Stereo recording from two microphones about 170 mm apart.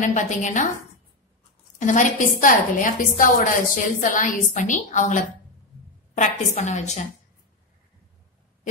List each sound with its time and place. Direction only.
0.0 s a woman's voice: 45° left (ahead or behind)
1.8 s a woman's voice: 45° left (ahead or behind)